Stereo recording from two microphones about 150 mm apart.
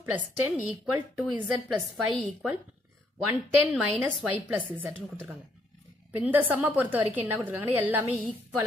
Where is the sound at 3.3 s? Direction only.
10° right (ahead or behind).